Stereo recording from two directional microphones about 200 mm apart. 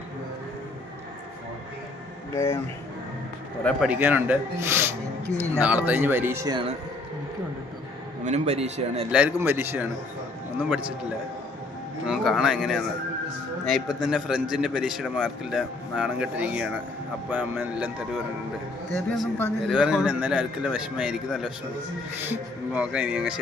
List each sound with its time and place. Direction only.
2.3 s speech: 15° left (ahead or behind)
3.8 s a man's voice: 5° right (ahead or behind); by 6.7 s 25° right (ahead or behind)
8.2 s a man's voice: 35° right (ahead or behind)
9.1 s a man's voice: 10° right (ahead or behind)
12.0 s speech: centre (ahead or behind)
14.0 s a man's voice: 5° right (ahead or behind)